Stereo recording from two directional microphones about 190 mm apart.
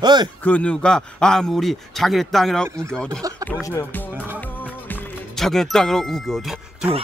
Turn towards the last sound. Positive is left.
turn(degrees=0)  # may be behind; listen again after turning